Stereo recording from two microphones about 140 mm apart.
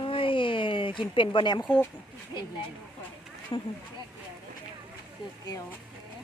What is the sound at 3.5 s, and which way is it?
Speech, 30° left (ahead or behind).